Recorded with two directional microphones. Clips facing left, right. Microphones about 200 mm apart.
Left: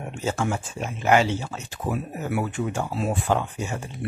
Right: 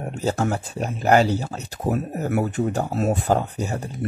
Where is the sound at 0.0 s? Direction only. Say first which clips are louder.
Right 3 dB; 35° right (ahead or behind).